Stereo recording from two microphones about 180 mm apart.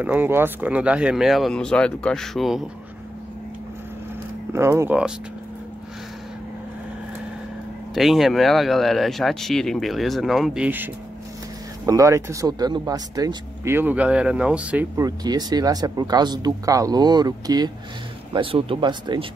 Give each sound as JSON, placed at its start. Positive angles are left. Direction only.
{"t": 0.0, "sound": "speech", "side_deg": -10}
{"t": 4.5, "sound": "speech", "side_deg": -15}
{"t": 7.9, "sound": "speech", "side_deg": 0}
{"t": 11.8, "sound": "speech", "side_deg": -20}
{"t": 15.0, "sound": "speech", "side_deg": -20}